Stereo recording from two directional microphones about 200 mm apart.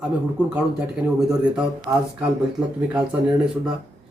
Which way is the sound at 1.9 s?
15° right (ahead or behind).